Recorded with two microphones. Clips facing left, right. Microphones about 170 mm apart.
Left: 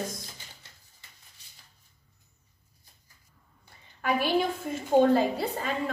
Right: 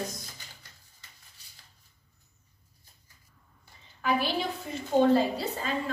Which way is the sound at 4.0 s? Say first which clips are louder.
Left 3 dB; 50° left (ahead or behind).